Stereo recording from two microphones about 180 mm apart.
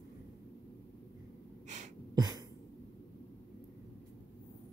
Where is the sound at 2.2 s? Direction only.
20° right (ahead or behind).